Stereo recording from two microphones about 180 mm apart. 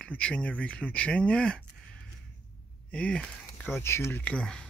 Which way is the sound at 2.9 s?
5° left (ahead or behind).